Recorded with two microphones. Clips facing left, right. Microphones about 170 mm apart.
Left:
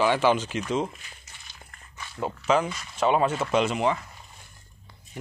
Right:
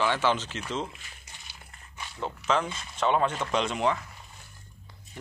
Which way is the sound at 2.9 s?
5° left (ahead or behind).